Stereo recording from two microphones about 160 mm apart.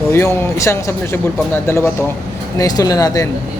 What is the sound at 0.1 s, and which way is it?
Speech, 15° left (ahead or behind).